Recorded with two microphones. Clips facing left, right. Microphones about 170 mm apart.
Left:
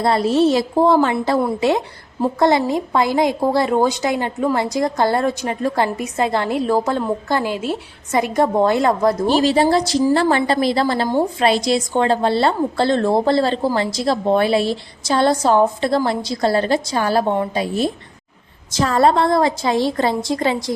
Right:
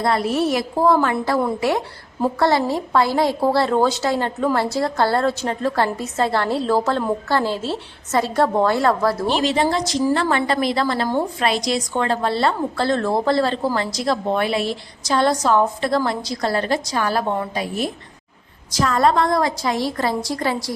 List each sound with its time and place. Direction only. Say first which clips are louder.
0.0 s a woman's voice: left 4 dB; 30° left (ahead or behind)
2.4 s a woman's voice: left 3 dB; 20° left (ahead or behind)
9.2 s a woman's voice: left 5 dB; 35° left (ahead or behind)